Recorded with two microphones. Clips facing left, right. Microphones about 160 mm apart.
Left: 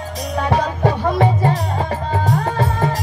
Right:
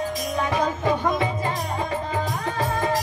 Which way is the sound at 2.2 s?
85° left.